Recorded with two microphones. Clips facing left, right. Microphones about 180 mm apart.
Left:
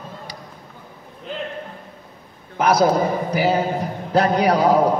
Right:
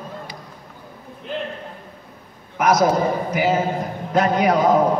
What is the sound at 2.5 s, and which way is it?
A man's voice, 30° left (ahead or behind).